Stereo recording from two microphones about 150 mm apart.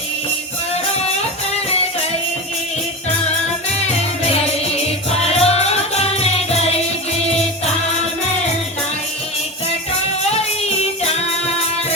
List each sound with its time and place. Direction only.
3.8 s music: 45° left (ahead or behind)
10.2 s music: 45° left (ahead or behind)